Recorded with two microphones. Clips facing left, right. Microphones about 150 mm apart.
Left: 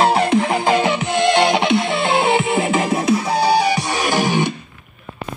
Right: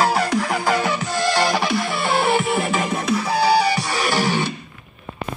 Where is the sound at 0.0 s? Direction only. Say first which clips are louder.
Left 4 dB; 25° left (ahead or behind).